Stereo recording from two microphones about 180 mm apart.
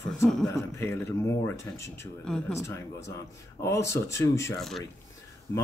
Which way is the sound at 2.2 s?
5° left (ahead or behind).